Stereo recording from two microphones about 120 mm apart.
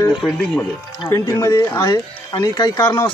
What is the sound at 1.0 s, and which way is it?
Speech, 30° left (ahead or behind).